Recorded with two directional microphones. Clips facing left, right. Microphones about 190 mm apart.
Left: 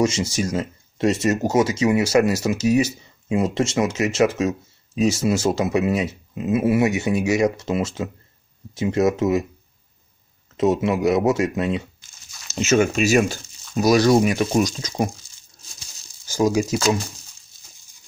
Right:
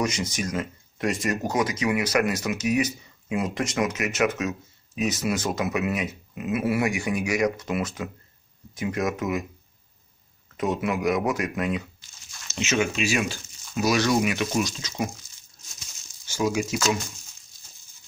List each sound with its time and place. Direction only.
0.0 s speech: 30° left (ahead or behind)
10.6 s speech: 25° left (ahead or behind)
12.4 s speech: 40° left (ahead or behind)
15.7 s crumpling: 35° left (ahead or behind)